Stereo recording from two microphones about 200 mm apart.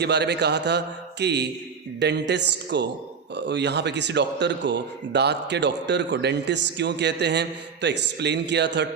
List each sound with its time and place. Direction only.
0.0 s speech: 55° right (ahead or behind)